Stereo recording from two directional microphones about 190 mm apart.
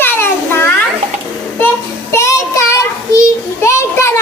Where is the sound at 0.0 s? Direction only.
10° left (ahead or behind).